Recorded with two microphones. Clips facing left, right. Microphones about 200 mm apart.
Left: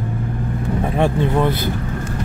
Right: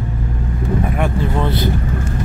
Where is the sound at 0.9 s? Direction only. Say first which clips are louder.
Left 2 dB; 25° left (ahead or behind).